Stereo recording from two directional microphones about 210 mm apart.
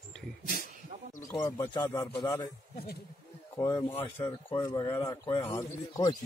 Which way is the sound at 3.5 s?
15° left (ahead or behind).